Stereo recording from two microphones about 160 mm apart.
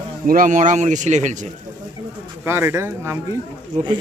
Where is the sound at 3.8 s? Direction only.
50° right (ahead or behind).